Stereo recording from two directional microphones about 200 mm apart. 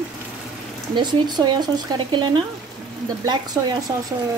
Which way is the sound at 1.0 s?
20° right (ahead or behind).